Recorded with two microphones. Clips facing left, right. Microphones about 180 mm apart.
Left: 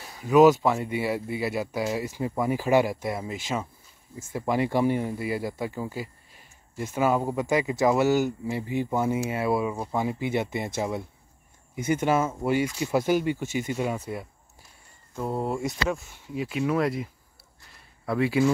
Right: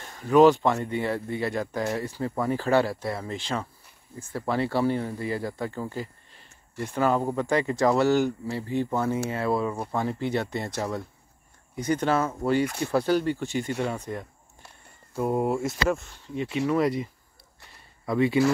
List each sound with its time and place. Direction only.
0.0 s speech: 5° left (ahead or behind)
15.1 s speech: 10° right (ahead or behind)
16.1 s speech: 10° left (ahead or behind)
17.7 s a sound: 5° left (ahead or behind)